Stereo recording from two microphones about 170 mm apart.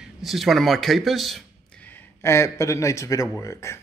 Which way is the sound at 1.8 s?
15° left (ahead or behind).